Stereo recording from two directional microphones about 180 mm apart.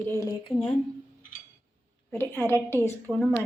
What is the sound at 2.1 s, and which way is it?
Speech, 10° left (ahead or behind).